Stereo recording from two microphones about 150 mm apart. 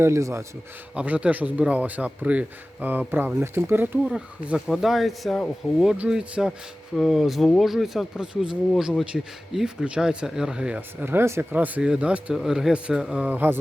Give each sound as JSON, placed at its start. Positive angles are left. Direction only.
{"t": 0.0, "sound": "a man's voice", "side_deg": -20}
{"t": 4.1, "sound": "speech", "side_deg": -5}